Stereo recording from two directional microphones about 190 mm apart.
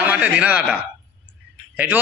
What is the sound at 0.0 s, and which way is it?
Speech, 5° right (ahead or behind).